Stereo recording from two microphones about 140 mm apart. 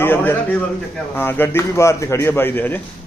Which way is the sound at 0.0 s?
15° left (ahead or behind).